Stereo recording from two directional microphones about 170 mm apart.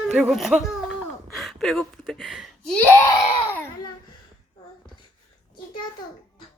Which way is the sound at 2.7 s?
10° left (ahead or behind).